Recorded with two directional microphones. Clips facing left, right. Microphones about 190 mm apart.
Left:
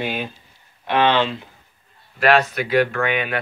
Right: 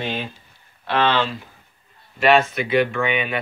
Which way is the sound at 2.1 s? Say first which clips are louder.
Even; centre (ahead or behind).